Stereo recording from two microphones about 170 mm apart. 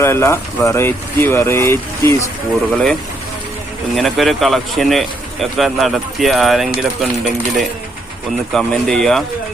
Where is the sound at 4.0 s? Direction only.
Centre (ahead or behind).